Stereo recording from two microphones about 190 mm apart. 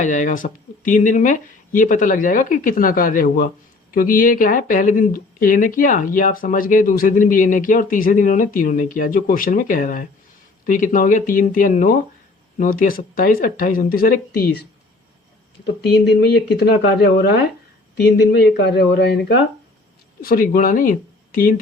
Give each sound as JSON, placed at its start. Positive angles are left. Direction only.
{"t": 0.0, "sound": "speech", "side_deg": 40}